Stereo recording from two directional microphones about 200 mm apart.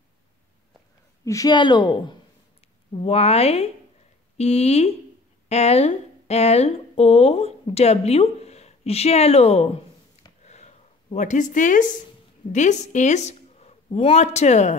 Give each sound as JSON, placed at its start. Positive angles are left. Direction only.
{"t": 1.2, "sound": "speech", "side_deg": 15}
{"t": 10.4, "sound": "a sound", "side_deg": 35}
{"t": 12.5, "sound": "a woman's voice", "side_deg": 35}